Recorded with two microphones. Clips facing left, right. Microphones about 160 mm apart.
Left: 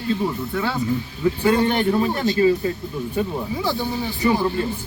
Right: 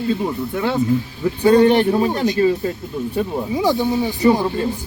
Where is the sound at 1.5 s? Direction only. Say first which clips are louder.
Right 7 dB; 35° right (ahead or behind).